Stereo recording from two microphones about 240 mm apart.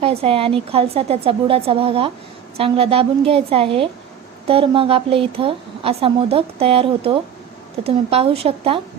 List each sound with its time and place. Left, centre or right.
0.0 s a woman's voice: right